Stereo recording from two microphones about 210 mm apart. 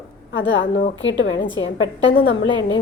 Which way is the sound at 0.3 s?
65° left (ahead or behind).